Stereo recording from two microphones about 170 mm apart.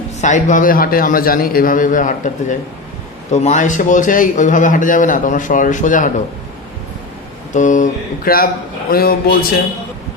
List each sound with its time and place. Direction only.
0.2 s a man's voice: 45° left (ahead or behind)
7.5 s a man's voice: 45° left (ahead or behind); by 9.5 s 60° left (ahead or behind)